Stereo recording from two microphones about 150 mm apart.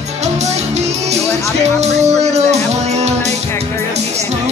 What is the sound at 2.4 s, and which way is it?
Music, 50° right (ahead or behind).